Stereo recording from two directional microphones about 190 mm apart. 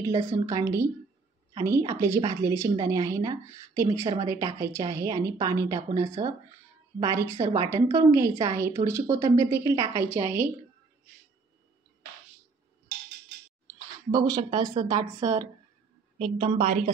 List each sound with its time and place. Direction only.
0.0 s a woman's voice: 20° right (ahead or behind)
14.1 s speech: 20° right (ahead or behind)
16.2 s a woman's voice: 30° right (ahead or behind)